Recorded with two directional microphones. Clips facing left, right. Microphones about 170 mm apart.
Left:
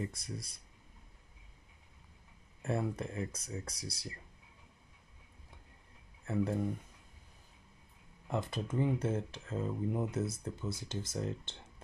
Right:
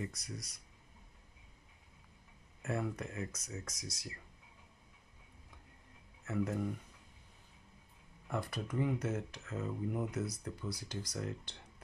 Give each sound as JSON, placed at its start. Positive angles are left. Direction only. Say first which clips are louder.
{"t": 0.0, "sound": "speech", "louder": "left 3 dB", "side_deg": 25}
{"t": 2.6, "sound": "speech", "louder": "left 3 dB", "side_deg": 30}
{"t": 6.2, "sound": "speech", "louder": "left 3 dB", "side_deg": 30}
{"t": 8.3, "sound": "speech", "louder": "left 3 dB", "side_deg": 25}